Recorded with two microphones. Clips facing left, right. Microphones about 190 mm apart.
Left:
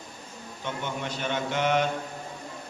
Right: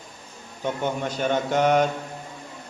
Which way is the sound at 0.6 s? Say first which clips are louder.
Right 7 dB; 45° right (ahead or behind).